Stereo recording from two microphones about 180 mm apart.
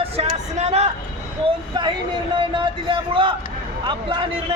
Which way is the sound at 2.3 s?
25° right (ahead or behind).